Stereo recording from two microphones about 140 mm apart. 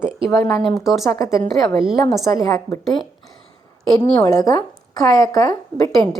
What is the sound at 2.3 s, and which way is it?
Speech, 25° left (ahead or behind).